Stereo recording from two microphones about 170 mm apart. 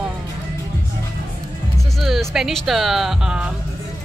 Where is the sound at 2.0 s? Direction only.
Centre (ahead or behind).